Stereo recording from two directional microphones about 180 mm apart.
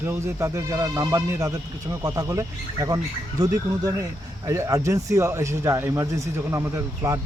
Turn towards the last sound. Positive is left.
turn(degrees=-15)  # may be behind; listen again after turning